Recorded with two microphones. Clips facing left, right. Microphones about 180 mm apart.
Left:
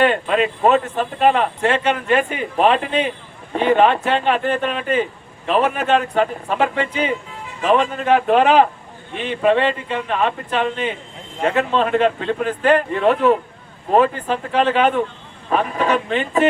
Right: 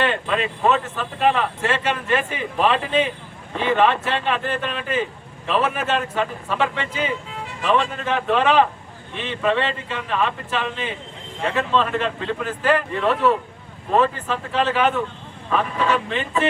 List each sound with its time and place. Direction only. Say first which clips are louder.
0.0 s speech: left 5 dB; 40° left (ahead or behind)